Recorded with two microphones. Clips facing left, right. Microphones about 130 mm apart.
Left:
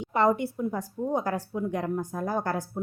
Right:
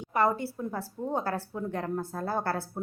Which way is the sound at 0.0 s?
20° left (ahead or behind).